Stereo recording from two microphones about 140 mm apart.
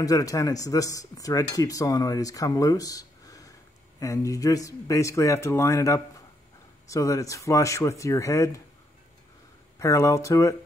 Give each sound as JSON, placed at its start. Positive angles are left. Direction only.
{"t": 0.0, "sound": "speech", "side_deg": 25}
{"t": 9.8, "sound": "speech", "side_deg": 25}